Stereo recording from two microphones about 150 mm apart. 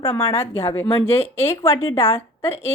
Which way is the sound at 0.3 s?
20° left (ahead or behind).